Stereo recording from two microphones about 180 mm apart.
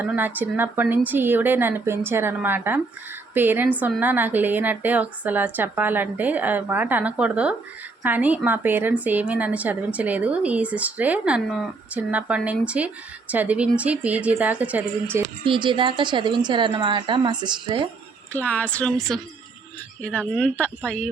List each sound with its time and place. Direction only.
0.0 s a woman's voice: 10° right (ahead or behind)
15.4 s a woman's voice: 25° right (ahead or behind)
18.3 s speech: 10° left (ahead or behind)